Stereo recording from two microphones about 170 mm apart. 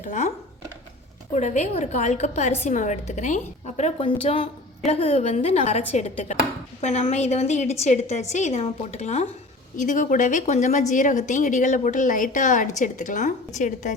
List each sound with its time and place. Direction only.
0.0 s a woman's voice: 45° left (ahead or behind)
6.8 s a woman's voice: 40° left (ahead or behind)